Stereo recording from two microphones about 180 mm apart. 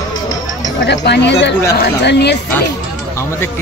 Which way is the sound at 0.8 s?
70° left (ahead or behind).